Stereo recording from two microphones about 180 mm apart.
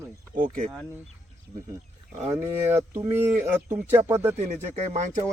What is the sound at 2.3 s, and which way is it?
Speech, 15° right (ahead or behind).